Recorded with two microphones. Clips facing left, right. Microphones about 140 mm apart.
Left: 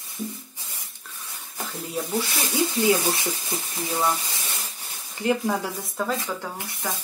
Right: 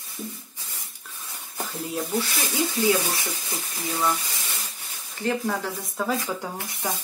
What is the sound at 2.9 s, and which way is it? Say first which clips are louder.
Speech: left 2 dB; 25° left (ahead or behind).